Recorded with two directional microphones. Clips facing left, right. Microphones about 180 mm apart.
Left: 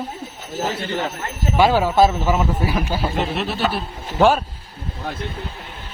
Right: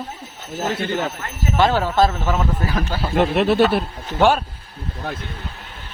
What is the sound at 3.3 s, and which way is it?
Speech, 55° right (ahead or behind).